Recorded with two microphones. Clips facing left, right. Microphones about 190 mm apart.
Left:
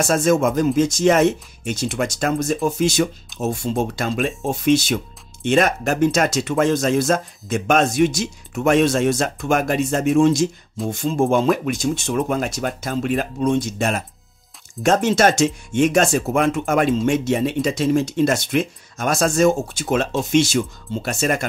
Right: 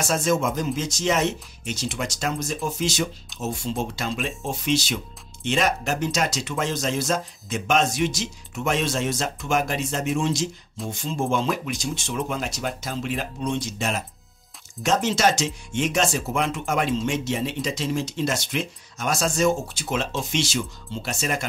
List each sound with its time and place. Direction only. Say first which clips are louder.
0.0 s speech: left 6 dB; 55° left (ahead or behind)